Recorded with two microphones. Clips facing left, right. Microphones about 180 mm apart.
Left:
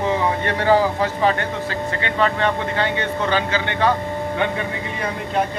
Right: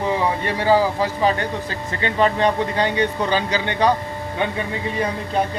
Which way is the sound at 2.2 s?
15° right (ahead or behind).